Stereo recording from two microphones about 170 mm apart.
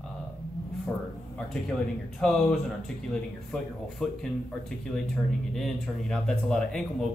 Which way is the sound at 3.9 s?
Centre (ahead or behind).